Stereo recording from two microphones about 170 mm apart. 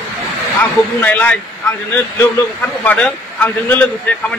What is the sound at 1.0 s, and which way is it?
Speech, 10° left (ahead or behind).